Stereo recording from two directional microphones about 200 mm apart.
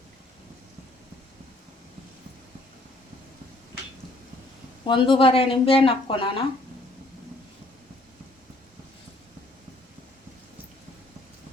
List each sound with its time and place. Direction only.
4.9 s speech: 25° left (ahead or behind)